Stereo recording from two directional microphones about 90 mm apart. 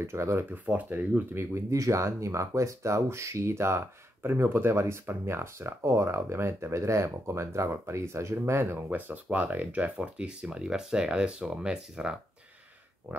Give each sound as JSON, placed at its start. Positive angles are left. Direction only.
{"t": 0.0, "sound": "speech", "side_deg": -30}
{"t": 1.3, "sound": "speech", "side_deg": -30}
{"t": 8.8, "sound": "speech", "side_deg": -20}
{"t": 13.1, "sound": "speech", "side_deg": -20}